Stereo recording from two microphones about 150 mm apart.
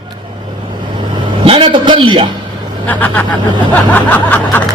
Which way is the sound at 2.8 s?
10° left (ahead or behind).